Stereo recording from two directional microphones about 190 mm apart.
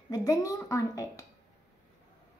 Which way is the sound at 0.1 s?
20° left (ahead or behind).